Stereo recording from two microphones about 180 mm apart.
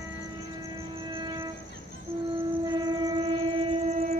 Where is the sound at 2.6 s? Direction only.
25° right (ahead or behind).